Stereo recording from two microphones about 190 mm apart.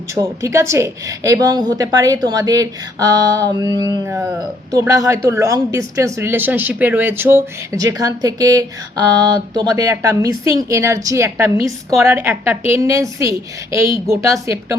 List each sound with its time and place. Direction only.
0.1 s a woman's voice: 15° right (ahead or behind)